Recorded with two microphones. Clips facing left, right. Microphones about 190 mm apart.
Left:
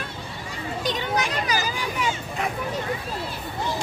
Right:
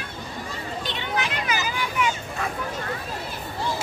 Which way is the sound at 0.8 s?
40° left (ahead or behind).